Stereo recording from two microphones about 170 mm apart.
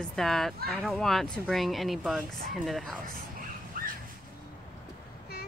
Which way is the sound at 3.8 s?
55° right (ahead or behind).